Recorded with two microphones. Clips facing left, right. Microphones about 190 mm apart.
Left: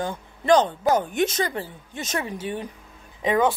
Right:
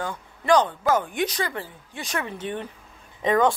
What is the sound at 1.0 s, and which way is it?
Speech, 45° left (ahead or behind).